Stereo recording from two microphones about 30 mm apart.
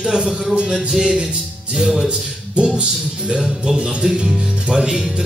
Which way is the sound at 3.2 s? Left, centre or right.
Right.